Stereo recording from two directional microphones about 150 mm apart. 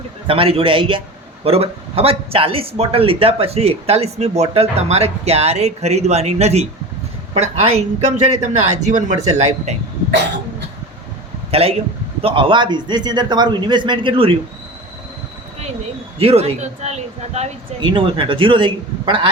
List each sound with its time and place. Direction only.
0.3 s a man's voice: 40° right (ahead or behind)
11.5 s a man's voice: 40° right (ahead or behind)
16.1 s a man's voice: 40° right (ahead or behind)
17.7 s a man's voice: 30° right (ahead or behind)